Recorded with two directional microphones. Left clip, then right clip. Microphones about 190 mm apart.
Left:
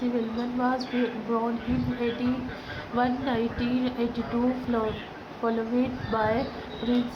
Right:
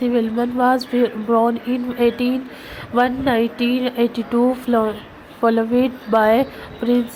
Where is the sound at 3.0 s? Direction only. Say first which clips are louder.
Right 10 dB; 35° right (ahead or behind).